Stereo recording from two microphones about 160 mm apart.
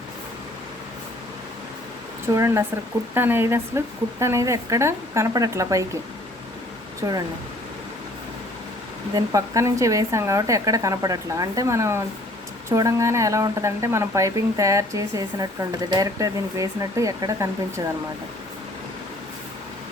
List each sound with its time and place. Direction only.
2.2 s speech: 15° right (ahead or behind)
7.0 s speech: 20° right (ahead or behind)
9.1 s speech: 20° right (ahead or behind)